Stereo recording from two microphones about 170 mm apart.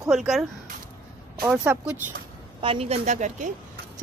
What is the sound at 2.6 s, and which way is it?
Speech, 35° right (ahead or behind).